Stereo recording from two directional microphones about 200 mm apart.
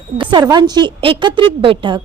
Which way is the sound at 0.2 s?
20° right (ahead or behind).